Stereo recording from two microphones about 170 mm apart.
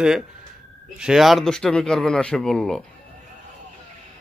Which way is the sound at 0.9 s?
5° right (ahead or behind).